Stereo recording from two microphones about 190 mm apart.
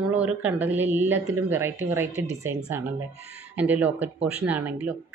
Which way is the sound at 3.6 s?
10° right (ahead or behind).